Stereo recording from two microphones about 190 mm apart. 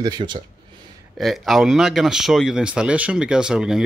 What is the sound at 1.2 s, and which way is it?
Speech, centre (ahead or behind).